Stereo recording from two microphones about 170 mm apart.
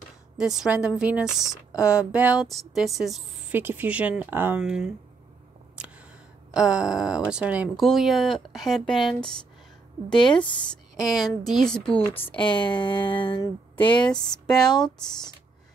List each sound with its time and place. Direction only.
0.4 s speech: 5° right (ahead or behind)
5.8 s a sound: 5° right (ahead or behind)
6.5 s speech: 5° right (ahead or behind)
10.1 s speech: 25° left (ahead or behind)
11.4 s speech: centre (ahead or behind)
12.4 s speech: 30° left (ahead or behind)
14.1 s speech: 5° left (ahead or behind)